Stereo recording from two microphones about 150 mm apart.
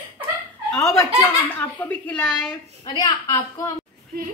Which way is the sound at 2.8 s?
25° left (ahead or behind).